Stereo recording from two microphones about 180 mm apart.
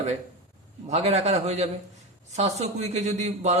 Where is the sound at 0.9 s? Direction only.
35° right (ahead or behind).